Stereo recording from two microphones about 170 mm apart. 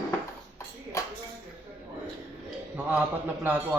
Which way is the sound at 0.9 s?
15° left (ahead or behind).